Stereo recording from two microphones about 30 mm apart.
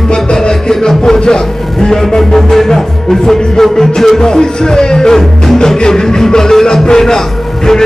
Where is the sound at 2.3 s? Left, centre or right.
Centre.